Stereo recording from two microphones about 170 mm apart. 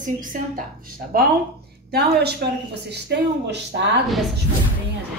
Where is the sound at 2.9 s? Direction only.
80° right.